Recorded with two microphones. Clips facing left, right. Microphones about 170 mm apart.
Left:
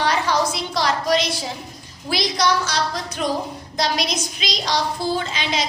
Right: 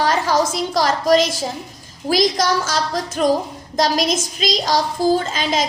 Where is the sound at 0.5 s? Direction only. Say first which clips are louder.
Right 4 dB; 45° right (ahead or behind).